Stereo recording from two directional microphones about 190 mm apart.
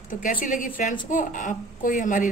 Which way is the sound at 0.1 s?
45° left (ahead or behind).